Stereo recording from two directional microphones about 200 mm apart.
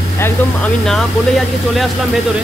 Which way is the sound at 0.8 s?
Centre (ahead or behind).